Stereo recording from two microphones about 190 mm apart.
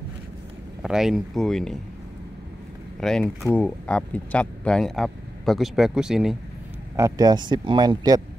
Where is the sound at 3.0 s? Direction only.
5° left (ahead or behind).